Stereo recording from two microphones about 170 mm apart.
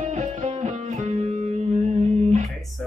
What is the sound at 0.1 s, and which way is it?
Music, 45° right (ahead or behind).